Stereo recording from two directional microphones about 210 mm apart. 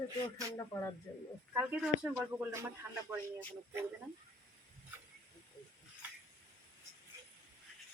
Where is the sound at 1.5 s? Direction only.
5° right (ahead or behind).